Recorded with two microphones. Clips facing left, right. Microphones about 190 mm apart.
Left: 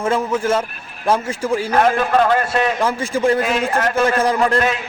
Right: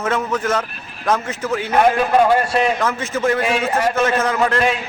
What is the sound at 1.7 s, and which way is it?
Speech, 10° right (ahead or behind).